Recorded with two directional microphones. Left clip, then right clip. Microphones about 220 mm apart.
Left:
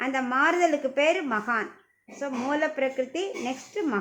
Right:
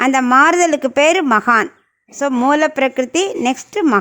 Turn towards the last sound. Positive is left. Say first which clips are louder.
# right 14 dB
turn(degrees=-50)  # may be behind; listen again after turning